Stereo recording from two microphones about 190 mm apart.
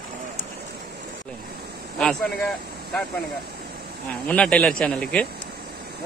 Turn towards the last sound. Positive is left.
turn(degrees=5)  # may be behind; listen again after turning